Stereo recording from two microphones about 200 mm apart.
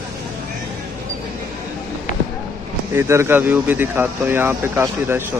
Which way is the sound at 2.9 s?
10° right (ahead or behind).